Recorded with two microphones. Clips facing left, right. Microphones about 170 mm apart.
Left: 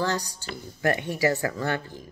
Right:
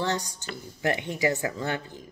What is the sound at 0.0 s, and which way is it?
Speech, 20° right (ahead or behind).